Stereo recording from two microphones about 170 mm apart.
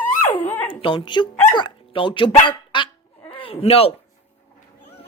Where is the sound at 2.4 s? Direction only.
30° left (ahead or behind).